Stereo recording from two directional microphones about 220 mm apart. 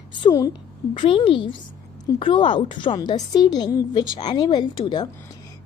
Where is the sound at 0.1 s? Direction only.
20° left (ahead or behind).